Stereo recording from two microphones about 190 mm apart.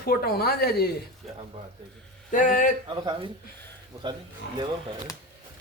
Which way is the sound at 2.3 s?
45° left (ahead or behind).